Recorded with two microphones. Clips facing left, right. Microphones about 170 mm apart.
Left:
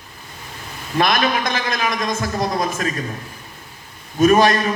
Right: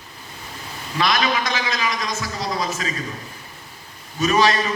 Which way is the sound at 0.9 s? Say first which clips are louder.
Left 3 dB; 50° left (ahead or behind).